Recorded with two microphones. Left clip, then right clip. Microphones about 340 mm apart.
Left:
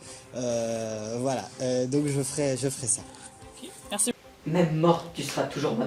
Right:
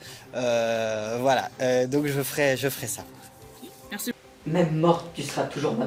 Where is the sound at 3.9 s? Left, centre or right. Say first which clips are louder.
Left 3 dB; centre.